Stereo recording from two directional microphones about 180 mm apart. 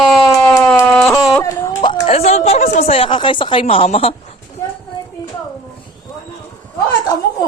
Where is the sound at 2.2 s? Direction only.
35° left (ahead or behind).